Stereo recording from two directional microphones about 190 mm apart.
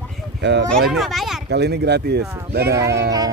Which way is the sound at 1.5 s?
60° right (ahead or behind).